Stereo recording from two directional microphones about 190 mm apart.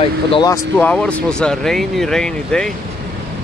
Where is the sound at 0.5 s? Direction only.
10° left (ahead or behind).